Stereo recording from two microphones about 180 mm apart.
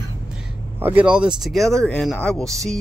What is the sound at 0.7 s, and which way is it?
Speech, 10° right (ahead or behind).